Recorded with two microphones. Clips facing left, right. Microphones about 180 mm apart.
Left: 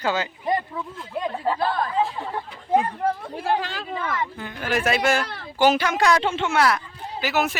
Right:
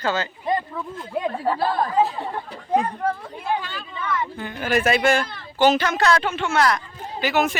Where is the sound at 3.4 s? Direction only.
90° left.